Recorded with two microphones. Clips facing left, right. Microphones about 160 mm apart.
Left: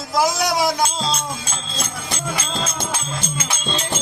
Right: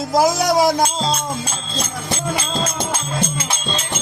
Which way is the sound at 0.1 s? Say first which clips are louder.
Right 3 dB; 45° right (ahead or behind).